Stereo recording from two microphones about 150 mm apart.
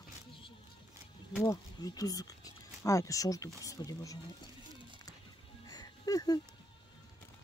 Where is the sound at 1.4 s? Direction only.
25° left (ahead or behind).